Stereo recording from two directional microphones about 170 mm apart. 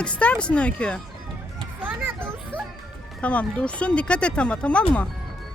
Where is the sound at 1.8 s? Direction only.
10° right (ahead or behind).